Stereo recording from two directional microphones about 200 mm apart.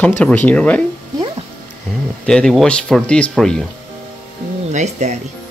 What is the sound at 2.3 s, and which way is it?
Speech, 5° left (ahead or behind).